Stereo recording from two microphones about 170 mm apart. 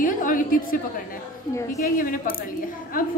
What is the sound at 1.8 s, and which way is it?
Speech, 60° left (ahead or behind).